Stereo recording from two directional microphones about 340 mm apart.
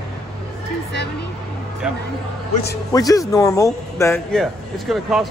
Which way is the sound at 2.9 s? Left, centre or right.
Centre.